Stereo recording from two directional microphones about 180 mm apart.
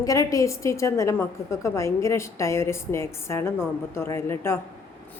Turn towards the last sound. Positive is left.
turn(degrees=15)  # may be behind; listen again after turning